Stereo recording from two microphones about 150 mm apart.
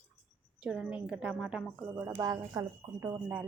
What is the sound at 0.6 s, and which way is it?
Speech, 5° right (ahead or behind).